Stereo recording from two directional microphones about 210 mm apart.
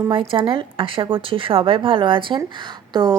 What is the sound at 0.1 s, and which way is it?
A woman's voice, 25° right (ahead or behind).